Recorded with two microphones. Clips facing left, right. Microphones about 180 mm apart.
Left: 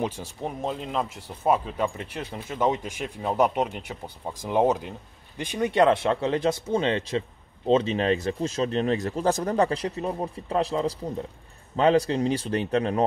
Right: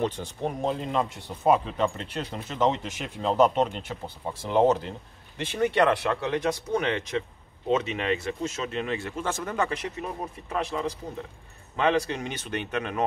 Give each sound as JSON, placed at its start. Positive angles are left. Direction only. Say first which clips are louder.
{"t": 0.0, "sound": "speech", "louder": "right 1 dB", "side_deg": 10}